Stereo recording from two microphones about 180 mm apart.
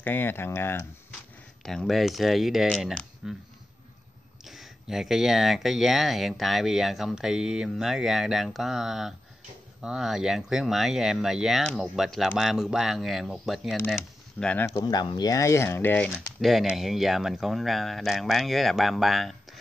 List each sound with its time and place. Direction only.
0.0 s speech: 10° left (ahead or behind)
1.6 s speech: centre (ahead or behind)
4.5 s speech: centre (ahead or behind)
14.8 s speech: 20° left (ahead or behind)
16.3 s speech: centre (ahead or behind)